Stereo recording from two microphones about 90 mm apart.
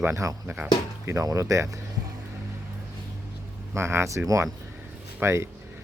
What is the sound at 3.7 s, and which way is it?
Speech, 30° right (ahead or behind).